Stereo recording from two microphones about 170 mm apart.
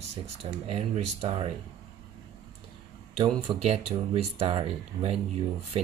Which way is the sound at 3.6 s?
35° right (ahead or behind).